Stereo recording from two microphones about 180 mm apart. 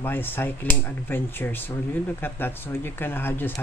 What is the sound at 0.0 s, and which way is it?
Speech, 10° left (ahead or behind).